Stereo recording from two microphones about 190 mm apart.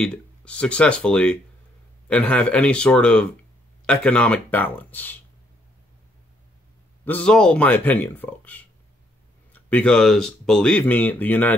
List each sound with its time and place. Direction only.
0.0 s speech: 5° left (ahead or behind)
7.1 s speech: 5° left (ahead or behind)